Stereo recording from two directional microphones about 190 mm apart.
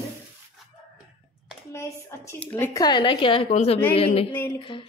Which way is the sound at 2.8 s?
25° left (ahead or behind).